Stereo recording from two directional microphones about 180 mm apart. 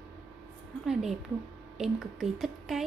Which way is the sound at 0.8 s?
5° right (ahead or behind).